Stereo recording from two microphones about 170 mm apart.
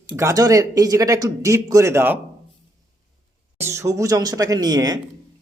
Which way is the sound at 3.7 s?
15° right (ahead or behind).